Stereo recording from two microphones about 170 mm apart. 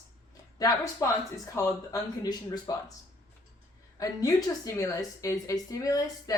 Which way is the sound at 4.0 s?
20° left (ahead or behind).